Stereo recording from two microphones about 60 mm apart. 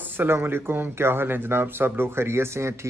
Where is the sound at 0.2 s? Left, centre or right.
Right.